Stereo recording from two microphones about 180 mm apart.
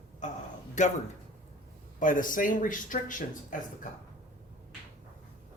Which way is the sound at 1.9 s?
45° left (ahead or behind).